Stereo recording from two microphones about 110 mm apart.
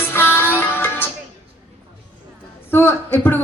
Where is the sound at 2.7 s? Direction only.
20° left (ahead or behind).